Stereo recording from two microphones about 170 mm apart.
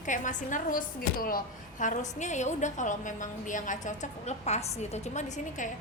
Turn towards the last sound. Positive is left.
turn(degrees=45)  # may be behind; listen again after turning